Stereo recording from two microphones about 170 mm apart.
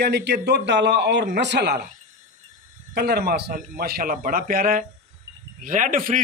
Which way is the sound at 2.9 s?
70° right (ahead or behind).